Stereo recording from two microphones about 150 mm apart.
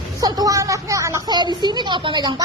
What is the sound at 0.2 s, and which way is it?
A woman's voice, 25° right (ahead or behind).